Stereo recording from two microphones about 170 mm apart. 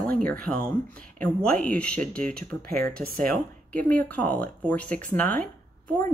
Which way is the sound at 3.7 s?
10° left (ahead or behind).